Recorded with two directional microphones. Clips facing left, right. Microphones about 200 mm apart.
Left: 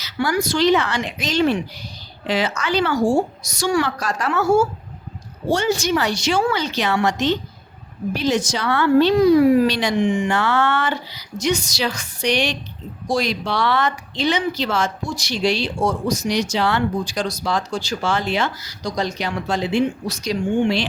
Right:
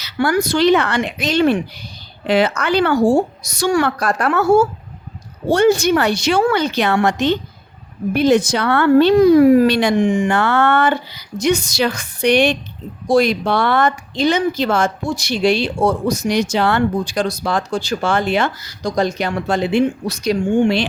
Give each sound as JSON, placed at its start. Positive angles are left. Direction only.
{"t": 0.0, "sound": "speech", "side_deg": -60}